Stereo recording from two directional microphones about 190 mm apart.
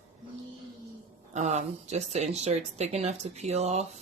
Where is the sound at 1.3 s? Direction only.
35° right (ahead or behind).